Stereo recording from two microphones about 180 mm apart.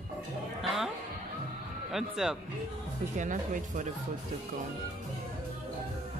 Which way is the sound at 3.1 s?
45° right (ahead or behind).